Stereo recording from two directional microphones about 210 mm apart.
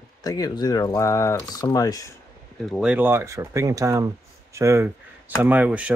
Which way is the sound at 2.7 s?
5° right (ahead or behind).